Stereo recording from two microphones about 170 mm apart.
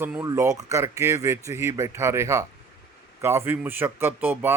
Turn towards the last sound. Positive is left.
turn(degrees=-10)  # may be behind; listen again after turning